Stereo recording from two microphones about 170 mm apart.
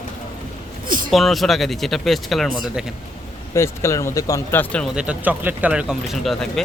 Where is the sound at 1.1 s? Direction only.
Centre (ahead or behind).